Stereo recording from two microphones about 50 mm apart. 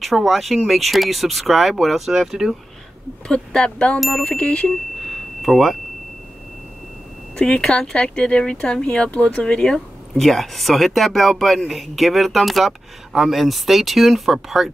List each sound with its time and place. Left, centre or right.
0.0 s speech: centre
3.5 s speech: centre
4.0 s speech: centre
4.3 s speech: left
5.0 s a sound: centre
7.3 s speech: centre